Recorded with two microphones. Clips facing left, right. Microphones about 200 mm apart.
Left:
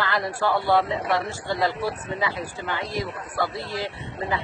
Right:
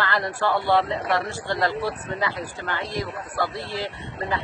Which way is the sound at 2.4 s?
15° left (ahead or behind).